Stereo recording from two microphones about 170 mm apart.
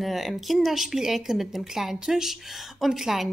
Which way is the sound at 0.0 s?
Centre (ahead or behind).